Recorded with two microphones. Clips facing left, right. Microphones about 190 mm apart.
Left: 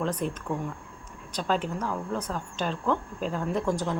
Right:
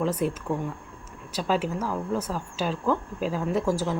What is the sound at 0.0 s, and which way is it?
Speech, 5° right (ahead or behind).